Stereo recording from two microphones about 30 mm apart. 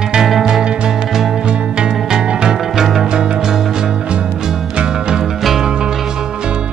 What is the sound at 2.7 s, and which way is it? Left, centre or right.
Music, centre.